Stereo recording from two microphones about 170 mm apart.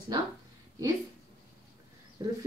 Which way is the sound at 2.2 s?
25° right (ahead or behind).